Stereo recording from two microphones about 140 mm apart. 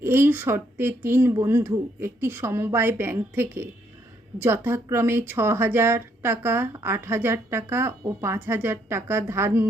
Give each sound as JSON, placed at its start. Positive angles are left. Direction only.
{"t": 0.0, "sound": "speech", "side_deg": -15}